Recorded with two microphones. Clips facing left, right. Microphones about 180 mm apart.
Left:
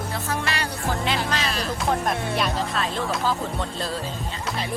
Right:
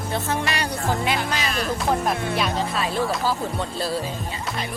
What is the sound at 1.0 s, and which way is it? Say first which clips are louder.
Speech: right 1 dB; 10° right (ahead or behind).